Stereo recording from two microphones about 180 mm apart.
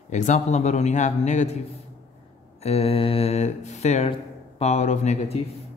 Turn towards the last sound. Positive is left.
turn(degrees=40)  # may be behind; listen again after turning